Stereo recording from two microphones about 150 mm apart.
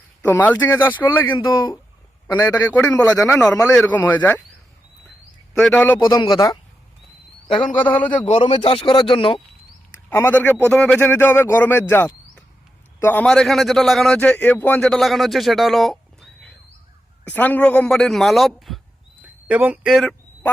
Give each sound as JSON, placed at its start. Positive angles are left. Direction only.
{"t": 0.3, "sound": "a man's voice", "side_deg": 10}
{"t": 1.3, "sound": "speech", "side_deg": 30}
{"t": 2.4, "sound": "a man's voice", "side_deg": 10}
{"t": 5.5, "sound": "a man's voice", "side_deg": 5}
{"t": 6.1, "sound": "speech", "side_deg": 30}
{"t": 7.6, "sound": "a man's voice", "side_deg": 10}
{"t": 8.3, "sound": "speech", "side_deg": 40}
{"t": 9.9, "sound": "a man's voice", "side_deg": 15}
{"t": 19.2, "sound": "speech", "side_deg": -10}